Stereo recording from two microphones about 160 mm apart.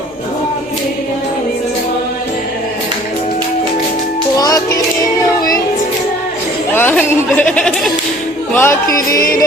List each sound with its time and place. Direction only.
4.4 s music: 25° left (ahead or behind)
6.7 s speech: 10° left (ahead or behind)
9.1 s music: 65° left (ahead or behind)